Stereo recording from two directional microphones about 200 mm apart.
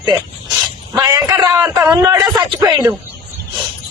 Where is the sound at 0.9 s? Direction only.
15° right (ahead or behind).